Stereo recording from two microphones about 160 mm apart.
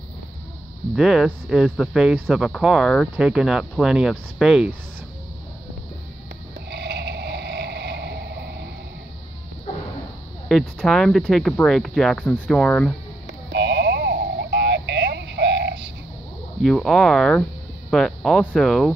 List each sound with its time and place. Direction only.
0.9 s speech: centre (ahead or behind)
6.7 s a sound: 90° right
10.5 s speech: centre (ahead or behind)
13.3 s sheep: 90° right
16.6 s speech: 5° left (ahead or behind)